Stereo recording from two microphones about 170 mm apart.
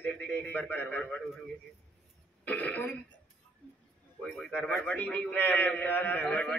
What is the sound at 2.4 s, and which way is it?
Speech, 10° left (ahead or behind).